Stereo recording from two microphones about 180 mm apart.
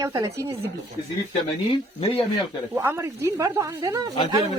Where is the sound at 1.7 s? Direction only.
30° left (ahead or behind).